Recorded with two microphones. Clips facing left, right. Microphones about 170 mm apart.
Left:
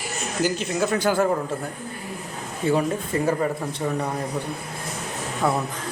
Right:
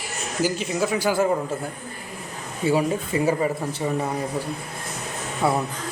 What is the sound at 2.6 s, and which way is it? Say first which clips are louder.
Speech: right 1 dB; 5° right (ahead or behind).